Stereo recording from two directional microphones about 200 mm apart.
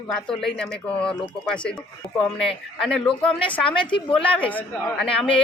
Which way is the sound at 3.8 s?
25° left (ahead or behind).